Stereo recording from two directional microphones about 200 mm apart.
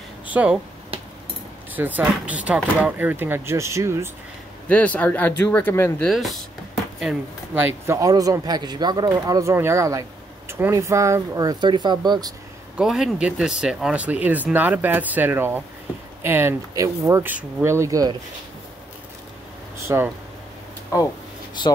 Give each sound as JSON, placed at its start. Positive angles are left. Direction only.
{"t": 0.3, "sound": "speech", "side_deg": -5}
{"t": 1.8, "sound": "speech", "side_deg": -10}
{"t": 4.6, "sound": "speech", "side_deg": 5}
{"t": 6.0, "sound": "speech", "side_deg": 0}
{"t": 12.7, "sound": "speech", "side_deg": 0}
{"t": 19.8, "sound": "speech", "side_deg": -15}